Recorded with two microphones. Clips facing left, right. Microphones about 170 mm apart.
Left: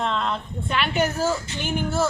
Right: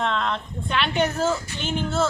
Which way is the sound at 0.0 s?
Centre (ahead or behind).